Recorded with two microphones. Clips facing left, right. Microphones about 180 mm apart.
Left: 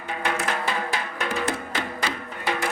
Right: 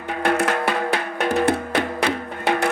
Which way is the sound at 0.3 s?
60° right (ahead or behind).